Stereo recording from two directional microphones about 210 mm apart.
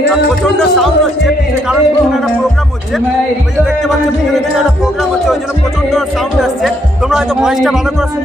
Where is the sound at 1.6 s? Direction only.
Centre (ahead or behind).